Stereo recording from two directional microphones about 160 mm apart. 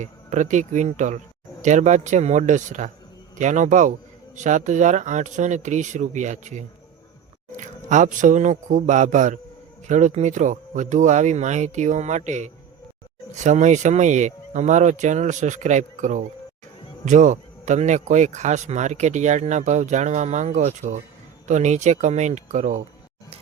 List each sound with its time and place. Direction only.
0.0 s speech: 50° right (ahead or behind)